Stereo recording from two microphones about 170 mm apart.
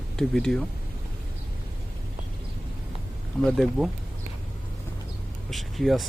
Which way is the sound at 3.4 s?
Centre (ahead or behind).